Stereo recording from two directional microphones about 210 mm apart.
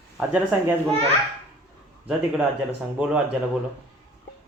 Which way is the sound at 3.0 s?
5° right (ahead or behind).